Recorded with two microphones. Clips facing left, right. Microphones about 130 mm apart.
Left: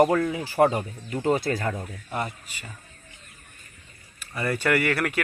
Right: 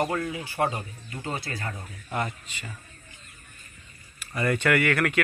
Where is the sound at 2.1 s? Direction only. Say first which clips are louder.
Right 1 dB; 10° left (ahead or behind).